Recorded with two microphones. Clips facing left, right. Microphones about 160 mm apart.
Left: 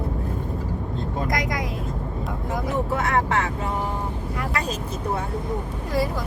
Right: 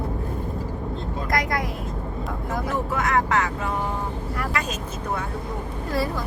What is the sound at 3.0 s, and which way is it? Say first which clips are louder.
Speech: right 3 dB; 30° left (ahead or behind).